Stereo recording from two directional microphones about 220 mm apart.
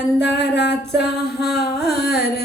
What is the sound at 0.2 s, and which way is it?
Music, 50° left (ahead or behind).